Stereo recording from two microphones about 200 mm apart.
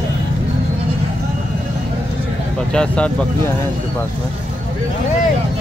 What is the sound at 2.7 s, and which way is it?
Speech, 5° left (ahead or behind).